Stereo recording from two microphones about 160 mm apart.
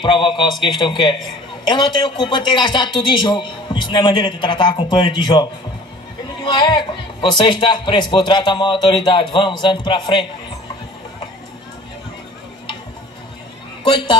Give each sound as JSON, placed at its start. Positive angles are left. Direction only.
{"t": 0.0, "sound": "speech", "side_deg": 30}